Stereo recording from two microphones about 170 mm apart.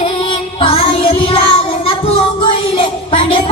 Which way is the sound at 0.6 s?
35° left (ahead or behind).